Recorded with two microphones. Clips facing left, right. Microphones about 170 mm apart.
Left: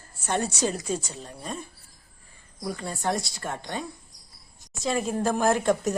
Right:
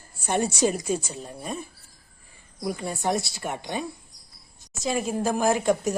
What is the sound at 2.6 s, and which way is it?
Speech, 15° right (ahead or behind).